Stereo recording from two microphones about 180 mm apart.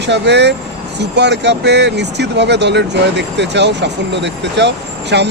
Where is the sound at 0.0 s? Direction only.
75° right (ahead or behind).